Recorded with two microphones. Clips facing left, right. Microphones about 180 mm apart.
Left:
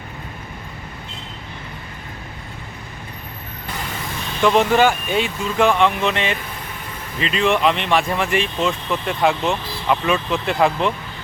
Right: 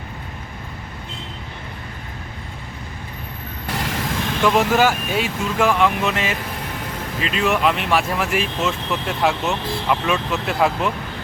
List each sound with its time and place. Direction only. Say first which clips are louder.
3.8 s vehicle: right 5 dB; 90° right
4.4 s speech: left 2 dB; 5° right (ahead or behind)